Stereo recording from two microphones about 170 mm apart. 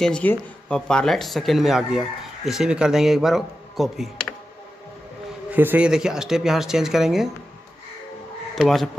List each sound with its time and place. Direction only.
0.0 s speech: 10° left (ahead or behind)
5.5 s speech: 10° right (ahead or behind)
8.5 s speech: centre (ahead or behind)